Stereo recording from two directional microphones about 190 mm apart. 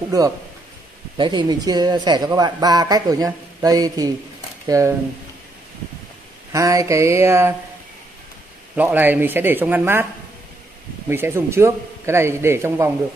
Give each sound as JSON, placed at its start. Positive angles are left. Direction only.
{"t": 1.1, "sound": "a man's voice", "side_deg": -25}
{"t": 6.5, "sound": "a man's voice", "side_deg": -15}
{"t": 8.7, "sound": "a man's voice", "side_deg": -10}
{"t": 11.1, "sound": "a man's voice", "side_deg": -10}